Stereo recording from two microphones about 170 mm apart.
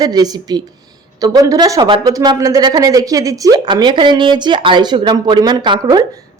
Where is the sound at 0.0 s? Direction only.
25° right (ahead or behind).